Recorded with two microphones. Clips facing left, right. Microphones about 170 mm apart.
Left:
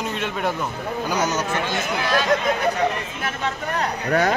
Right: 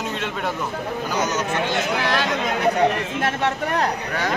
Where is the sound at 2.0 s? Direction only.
70° right (ahead or behind).